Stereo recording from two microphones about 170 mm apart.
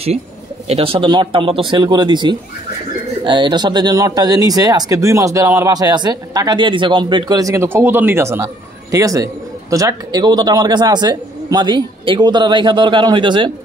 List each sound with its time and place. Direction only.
0.7 s speech: 35° right (ahead or behind)